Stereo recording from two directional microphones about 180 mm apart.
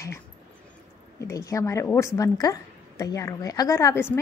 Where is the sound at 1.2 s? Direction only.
15° left (ahead or behind).